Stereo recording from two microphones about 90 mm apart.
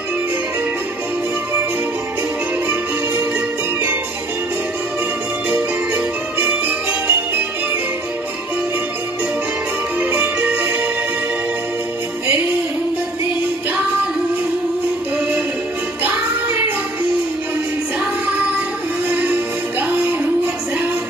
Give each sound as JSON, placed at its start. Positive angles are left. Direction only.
{"t": 3.3, "sound": "music", "side_deg": -20}
{"t": 5.5, "sound": "music", "side_deg": -20}
{"t": 9.9, "sound": "music", "side_deg": -20}
{"t": 16.0, "sound": "music", "side_deg": -20}
{"t": 19.0, "sound": "music", "side_deg": -20}